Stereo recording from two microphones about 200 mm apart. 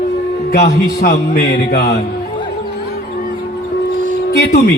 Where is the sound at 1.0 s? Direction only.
50° left (ahead or behind).